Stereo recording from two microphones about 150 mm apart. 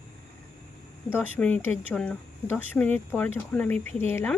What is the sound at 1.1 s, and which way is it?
Speech, 10° left (ahead or behind).